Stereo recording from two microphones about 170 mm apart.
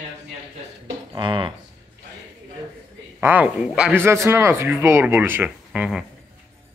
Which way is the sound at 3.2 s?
10° right (ahead or behind).